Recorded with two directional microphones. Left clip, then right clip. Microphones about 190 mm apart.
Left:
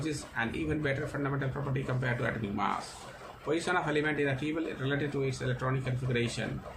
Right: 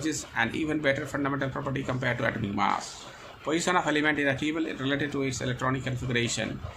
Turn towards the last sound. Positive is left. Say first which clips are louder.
# right 4 dB
turn(degrees=-45)  # may be behind; listen again after turning